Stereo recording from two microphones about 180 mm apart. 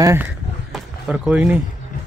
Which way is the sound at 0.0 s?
15° right (ahead or behind).